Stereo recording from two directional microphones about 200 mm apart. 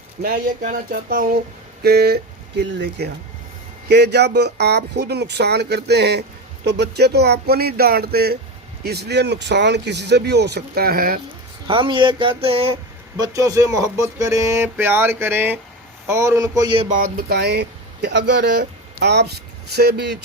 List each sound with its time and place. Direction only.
0.2 s speech: 45° right (ahead or behind)
11.7 s speech: 25° right (ahead or behind)
13.1 s speech: 15° right (ahead or behind)
16.9 s speech: 45° right (ahead or behind)